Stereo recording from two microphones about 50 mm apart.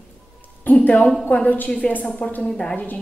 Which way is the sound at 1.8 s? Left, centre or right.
Left.